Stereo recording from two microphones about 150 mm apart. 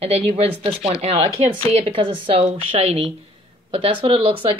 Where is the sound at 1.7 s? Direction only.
35° right (ahead or behind).